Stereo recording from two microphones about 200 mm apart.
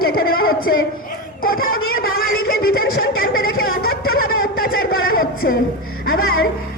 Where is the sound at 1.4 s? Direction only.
45° left (ahead or behind).